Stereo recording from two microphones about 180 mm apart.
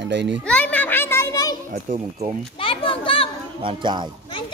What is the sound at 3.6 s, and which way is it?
Speech, 25° right (ahead or behind).